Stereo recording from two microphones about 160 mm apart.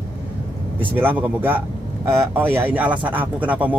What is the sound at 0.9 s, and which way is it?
Speech, 10° right (ahead or behind).